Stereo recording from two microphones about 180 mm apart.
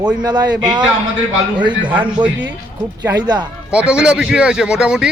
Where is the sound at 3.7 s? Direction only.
5° right (ahead or behind).